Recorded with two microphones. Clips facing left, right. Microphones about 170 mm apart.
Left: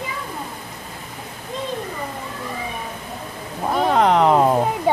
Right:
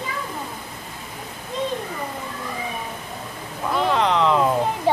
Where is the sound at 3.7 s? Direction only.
45° left (ahead or behind).